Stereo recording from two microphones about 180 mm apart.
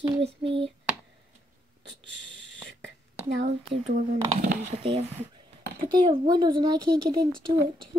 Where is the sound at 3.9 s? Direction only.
45° right (ahead or behind).